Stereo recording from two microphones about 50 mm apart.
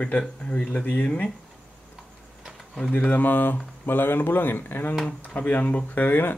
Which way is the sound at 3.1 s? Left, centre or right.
Left.